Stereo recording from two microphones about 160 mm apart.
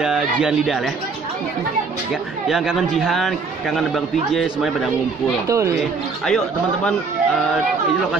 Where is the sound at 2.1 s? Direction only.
Centre (ahead or behind).